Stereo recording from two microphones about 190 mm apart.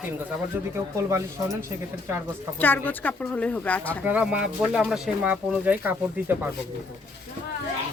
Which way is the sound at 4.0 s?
5° right (ahead or behind).